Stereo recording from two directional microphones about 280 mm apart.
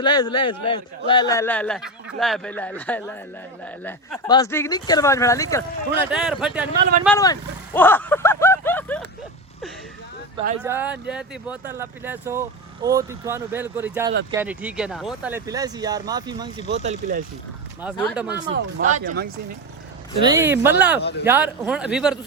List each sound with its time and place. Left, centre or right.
0.0 s a man's voice: centre
4.3 s speech: centre
6.1 s a man's voice: centre
7.2 s vehicle: centre
10.6 s speech: centre; by 17.2 s right
18.1 s a man's voice: centre
18.5 s speech: right
20.2 s speech: centre
21.0 s speech: left
21.2 s a man's voice: centre